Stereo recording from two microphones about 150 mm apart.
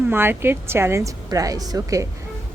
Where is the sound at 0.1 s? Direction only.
15° right (ahead or behind).